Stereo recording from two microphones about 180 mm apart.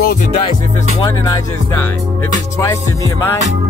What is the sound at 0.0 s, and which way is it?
Music, 55° left (ahead or behind).